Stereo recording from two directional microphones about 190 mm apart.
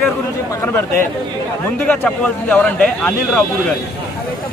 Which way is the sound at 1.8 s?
5° left (ahead or behind).